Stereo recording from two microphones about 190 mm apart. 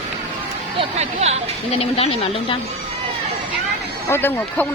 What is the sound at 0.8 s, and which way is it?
Speech, 35° right (ahead or behind).